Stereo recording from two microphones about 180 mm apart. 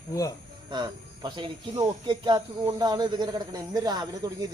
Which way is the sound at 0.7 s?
25° right (ahead or behind).